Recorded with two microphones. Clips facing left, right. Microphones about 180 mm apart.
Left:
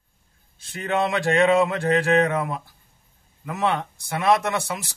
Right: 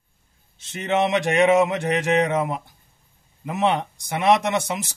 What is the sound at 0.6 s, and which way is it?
Speech, 20° right (ahead or behind).